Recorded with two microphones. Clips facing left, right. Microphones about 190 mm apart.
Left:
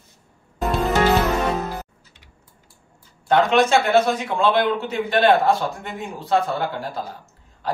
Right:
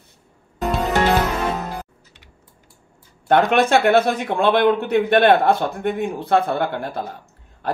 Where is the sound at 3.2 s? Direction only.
55° right (ahead or behind).